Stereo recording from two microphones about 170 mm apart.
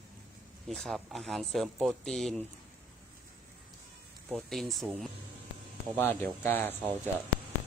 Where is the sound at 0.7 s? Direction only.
Centre (ahead or behind).